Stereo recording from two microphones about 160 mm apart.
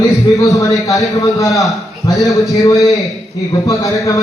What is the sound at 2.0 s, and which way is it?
A man's voice, 20° left (ahead or behind).